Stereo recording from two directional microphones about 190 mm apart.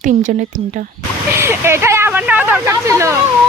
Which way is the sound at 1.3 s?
15° right (ahead or behind).